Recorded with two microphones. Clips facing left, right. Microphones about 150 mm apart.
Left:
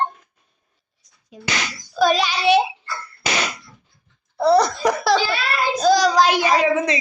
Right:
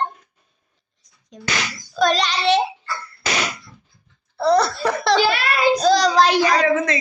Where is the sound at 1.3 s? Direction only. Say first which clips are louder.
Even; 5° left (ahead or behind).